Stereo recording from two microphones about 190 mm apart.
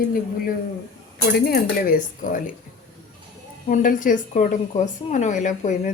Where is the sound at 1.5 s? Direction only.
45° left (ahead or behind).